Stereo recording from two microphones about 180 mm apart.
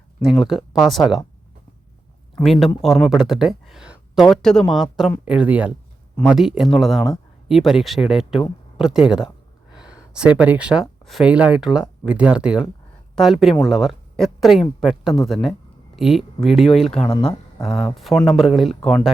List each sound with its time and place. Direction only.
0.3 s speech: centre (ahead or behind)
2.4 s speech: centre (ahead or behind)